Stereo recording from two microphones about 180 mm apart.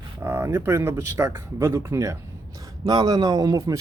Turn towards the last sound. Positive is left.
turn(degrees=-20)  # may be behind; listen again after turning